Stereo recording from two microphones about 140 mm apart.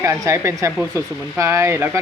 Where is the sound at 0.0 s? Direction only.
20° right (ahead or behind).